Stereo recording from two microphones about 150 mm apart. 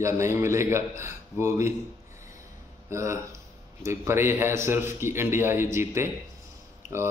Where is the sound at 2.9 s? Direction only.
20° right (ahead or behind).